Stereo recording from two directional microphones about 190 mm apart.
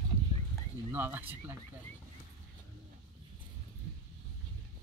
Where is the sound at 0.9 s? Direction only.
10° right (ahead or behind).